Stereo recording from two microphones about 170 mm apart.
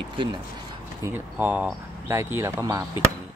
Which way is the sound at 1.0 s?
10° right (ahead or behind).